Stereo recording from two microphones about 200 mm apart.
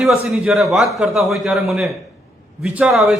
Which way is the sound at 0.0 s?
Centre (ahead or behind).